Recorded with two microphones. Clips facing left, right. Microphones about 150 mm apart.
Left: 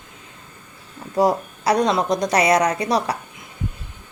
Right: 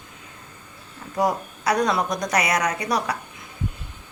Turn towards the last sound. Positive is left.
turn(degrees=30)  # may be behind; listen again after turning